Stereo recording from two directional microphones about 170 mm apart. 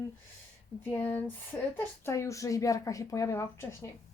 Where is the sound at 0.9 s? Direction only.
10° left (ahead or behind).